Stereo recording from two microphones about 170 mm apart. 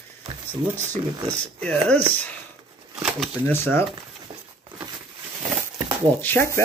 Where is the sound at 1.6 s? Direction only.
5° left (ahead or behind).